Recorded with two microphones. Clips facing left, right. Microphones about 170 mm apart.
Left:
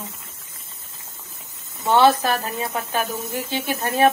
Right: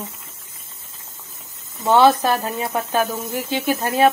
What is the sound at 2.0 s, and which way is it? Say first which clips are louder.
Speech: right 2 dB; 20° right (ahead or behind).